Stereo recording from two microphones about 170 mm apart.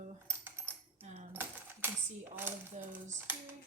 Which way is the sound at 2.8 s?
45° right (ahead or behind).